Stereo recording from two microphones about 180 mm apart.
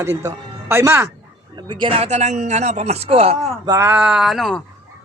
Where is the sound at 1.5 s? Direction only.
25° right (ahead or behind).